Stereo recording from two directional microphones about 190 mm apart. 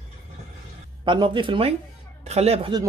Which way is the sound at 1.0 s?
25° right (ahead or behind).